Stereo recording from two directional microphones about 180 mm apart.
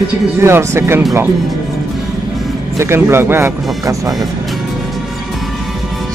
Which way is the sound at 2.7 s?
15° right (ahead or behind).